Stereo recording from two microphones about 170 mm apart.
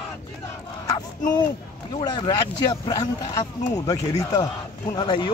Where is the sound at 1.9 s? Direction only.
25° left (ahead or behind).